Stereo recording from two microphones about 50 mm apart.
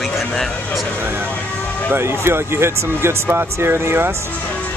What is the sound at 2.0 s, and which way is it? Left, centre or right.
Speech, right.